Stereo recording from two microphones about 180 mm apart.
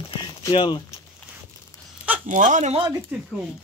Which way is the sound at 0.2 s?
25° left (ahead or behind).